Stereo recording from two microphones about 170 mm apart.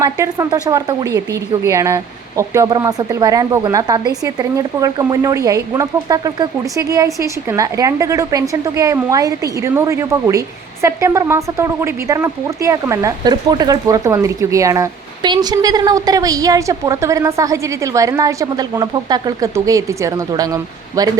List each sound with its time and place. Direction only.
0.0 s speech: 20° right (ahead or behind)